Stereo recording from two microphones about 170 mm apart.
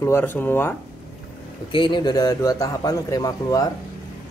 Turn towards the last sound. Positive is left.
turn(degrees=20)  # may be behind; listen again after turning